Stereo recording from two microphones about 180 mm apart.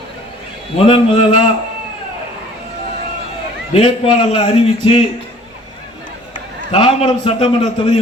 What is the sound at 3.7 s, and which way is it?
A man's voice, 30° left (ahead or behind).